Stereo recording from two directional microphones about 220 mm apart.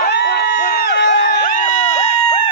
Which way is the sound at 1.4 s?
35° left (ahead or behind).